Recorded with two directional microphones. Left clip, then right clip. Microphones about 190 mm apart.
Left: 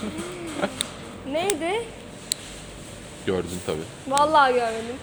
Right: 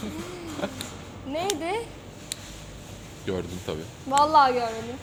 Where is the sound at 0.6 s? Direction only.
5° right (ahead or behind).